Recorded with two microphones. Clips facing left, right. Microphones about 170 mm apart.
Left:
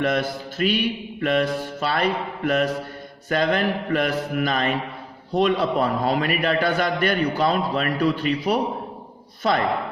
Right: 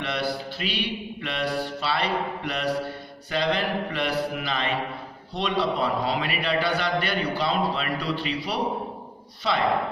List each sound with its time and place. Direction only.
0.0 s a man's voice: 45° left (ahead or behind)